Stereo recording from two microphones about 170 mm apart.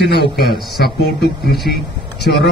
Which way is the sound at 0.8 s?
75° left (ahead or behind).